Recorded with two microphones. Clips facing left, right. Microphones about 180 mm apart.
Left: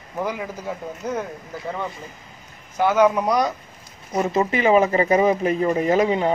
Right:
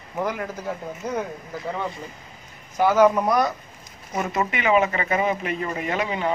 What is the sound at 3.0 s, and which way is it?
Speech, 10° left (ahead or behind).